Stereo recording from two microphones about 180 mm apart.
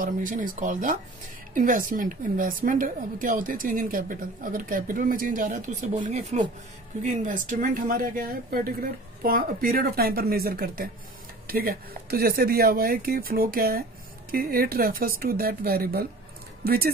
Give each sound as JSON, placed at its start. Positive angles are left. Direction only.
{"t": 0.0, "sound": "a woman's voice", "side_deg": -50}